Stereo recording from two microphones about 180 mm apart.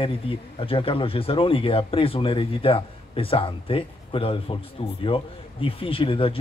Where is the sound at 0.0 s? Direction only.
30° left (ahead or behind).